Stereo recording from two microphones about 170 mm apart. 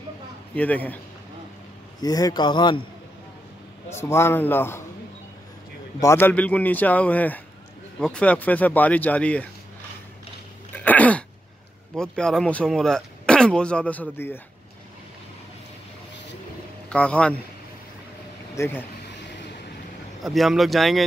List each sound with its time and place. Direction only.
0.6 s a man's voice: 10° left (ahead or behind)
2.0 s a man's voice: 20° left (ahead or behind)
4.0 s a man's voice: 15° left (ahead or behind)
5.9 s a man's voice: 15° left (ahead or behind)
10.8 s a sound: 10° left (ahead or behind)
12.0 s speech: 5° left (ahead or behind)
16.9 s a man's voice: 5° left (ahead or behind)
18.5 s speech: 15° left (ahead or behind)
20.2 s speech: centre (ahead or behind)